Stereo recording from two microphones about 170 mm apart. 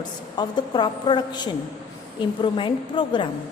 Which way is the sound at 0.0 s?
25° left (ahead or behind).